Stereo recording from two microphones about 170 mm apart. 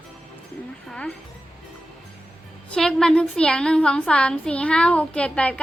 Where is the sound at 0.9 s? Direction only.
5° left (ahead or behind).